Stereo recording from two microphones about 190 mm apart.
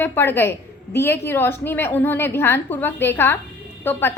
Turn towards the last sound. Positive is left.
turn(degrees=10)  # may be behind; listen again after turning